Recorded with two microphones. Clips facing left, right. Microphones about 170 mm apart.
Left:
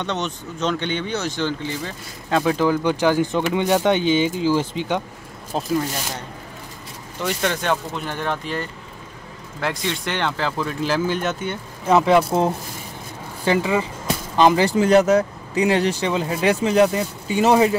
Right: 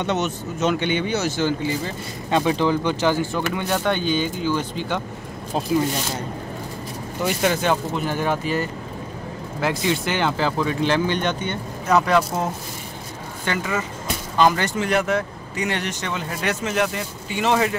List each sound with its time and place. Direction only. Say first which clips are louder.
0.0 s speech: right 3 dB; 5° right (ahead or behind); by 4.0 s 20° left (ahead or behind)
4.0 s speech: left 4 dB; 90° left
7.2 s speech: right 1 dB; 5° right (ahead or behind)
11.8 s speech: left 3 dB; 20° left (ahead or behind)